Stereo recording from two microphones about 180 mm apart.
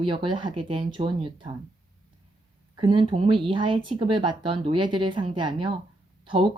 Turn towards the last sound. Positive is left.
turn(degrees=-30)  # may be behind; listen again after turning